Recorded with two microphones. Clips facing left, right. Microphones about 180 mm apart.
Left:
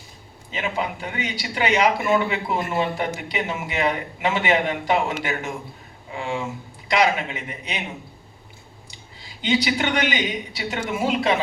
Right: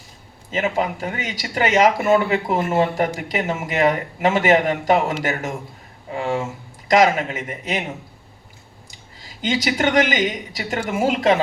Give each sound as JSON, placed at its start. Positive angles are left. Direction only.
{"t": 0.5, "sound": "a man's voice", "side_deg": -45}
{"t": 9.4, "sound": "a man's voice", "side_deg": -45}